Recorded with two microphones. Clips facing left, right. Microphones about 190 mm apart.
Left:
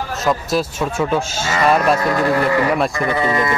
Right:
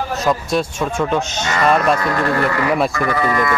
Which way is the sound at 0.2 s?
Centre (ahead or behind).